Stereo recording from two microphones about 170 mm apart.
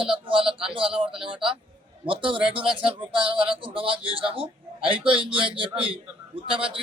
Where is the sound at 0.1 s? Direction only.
30° right (ahead or behind).